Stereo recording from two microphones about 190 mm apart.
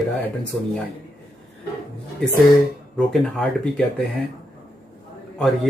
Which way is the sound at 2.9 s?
5° left (ahead or behind).